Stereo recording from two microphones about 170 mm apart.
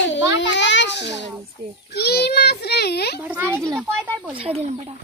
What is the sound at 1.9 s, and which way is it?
A child's voice, 70° left (ahead or behind).